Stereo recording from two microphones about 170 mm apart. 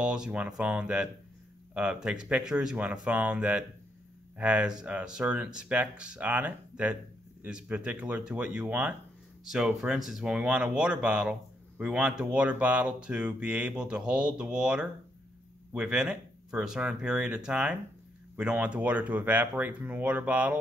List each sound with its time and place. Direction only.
0.0 s speech: 5° right (ahead or behind)